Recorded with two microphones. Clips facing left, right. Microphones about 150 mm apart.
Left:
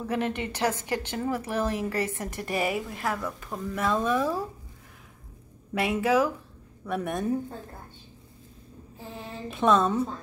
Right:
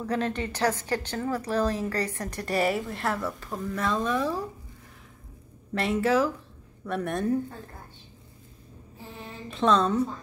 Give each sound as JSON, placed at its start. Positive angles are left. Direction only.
{"t": 0.0, "sound": "a woman's voice", "side_deg": 15}
{"t": 5.8, "sound": "speech", "side_deg": 0}
{"t": 9.5, "sound": "a woman's voice", "side_deg": 5}